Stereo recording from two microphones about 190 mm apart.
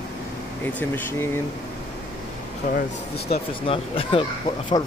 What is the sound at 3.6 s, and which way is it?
Speech, 30° left (ahead or behind).